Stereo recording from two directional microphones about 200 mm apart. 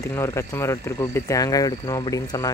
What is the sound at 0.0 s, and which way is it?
Speech, 15° left (ahead or behind).